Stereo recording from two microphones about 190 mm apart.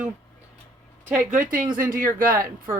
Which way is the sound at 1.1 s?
40° right (ahead or behind).